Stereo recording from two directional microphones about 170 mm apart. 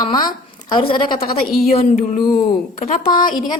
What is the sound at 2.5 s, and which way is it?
Speech, 55° left (ahead or behind).